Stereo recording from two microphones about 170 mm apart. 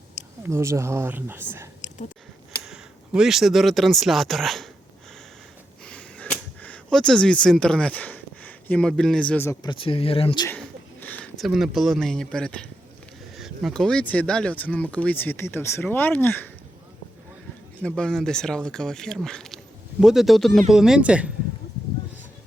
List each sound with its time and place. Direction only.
0.4 s speech: 15° right (ahead or behind)
2.6 s speech: 5° right (ahead or behind)
5.8 s a sound: 5° left (ahead or behind)
9.6 s speech: 30° left (ahead or behind)
10.6 s speech: 10° left (ahead or behind)
17.8 s speech: 5° left (ahead or behind)